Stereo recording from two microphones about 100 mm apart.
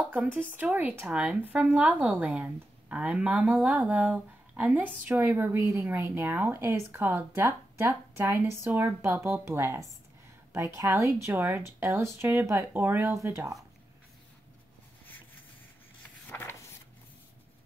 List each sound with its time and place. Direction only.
0.1 s speech: 15° right (ahead or behind)
11.3 s speech: 20° right (ahead or behind)
16.3 s a sound: 25° left (ahead or behind)